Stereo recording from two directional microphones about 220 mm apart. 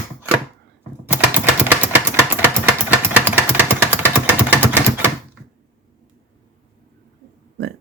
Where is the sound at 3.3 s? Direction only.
10° right (ahead or behind).